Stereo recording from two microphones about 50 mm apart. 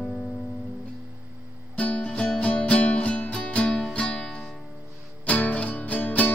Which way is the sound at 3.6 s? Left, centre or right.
Centre.